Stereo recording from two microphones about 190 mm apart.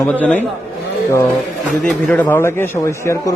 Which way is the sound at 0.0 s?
10° left (ahead or behind).